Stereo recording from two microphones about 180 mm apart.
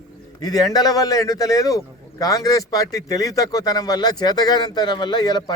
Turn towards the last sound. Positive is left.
turn(degrees=20)  # may be behind; listen again after turning